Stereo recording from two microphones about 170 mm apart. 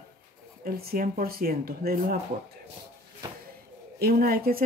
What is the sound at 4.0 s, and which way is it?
Speech, 65° right (ahead or behind).